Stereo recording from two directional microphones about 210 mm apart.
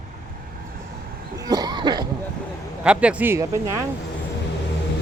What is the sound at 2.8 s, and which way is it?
Speech, 5° right (ahead or behind).